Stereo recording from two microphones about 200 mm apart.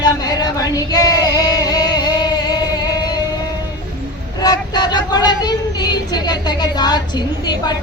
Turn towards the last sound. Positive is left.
turn(degrees=20)  # may be behind; listen again after turning